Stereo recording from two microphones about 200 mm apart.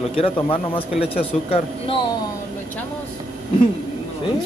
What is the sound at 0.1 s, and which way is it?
A man's voice, 25° left (ahead or behind).